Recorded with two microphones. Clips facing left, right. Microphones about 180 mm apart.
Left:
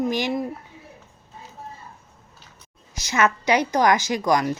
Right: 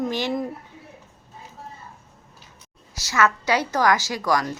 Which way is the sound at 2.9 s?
20° left (ahead or behind).